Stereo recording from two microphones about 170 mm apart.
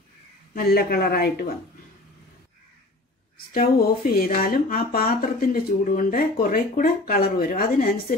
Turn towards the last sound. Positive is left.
turn(degrees=60)  # may be behind; listen again after turning